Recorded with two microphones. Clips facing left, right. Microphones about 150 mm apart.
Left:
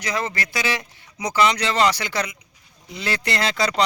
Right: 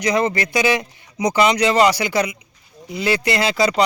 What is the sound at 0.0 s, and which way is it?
Speech, 15° right (ahead or behind).